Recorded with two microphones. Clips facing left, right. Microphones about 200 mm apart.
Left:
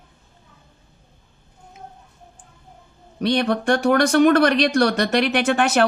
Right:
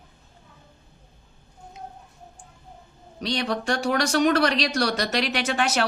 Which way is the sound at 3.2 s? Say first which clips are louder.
Left 7 dB; 55° left (ahead or behind).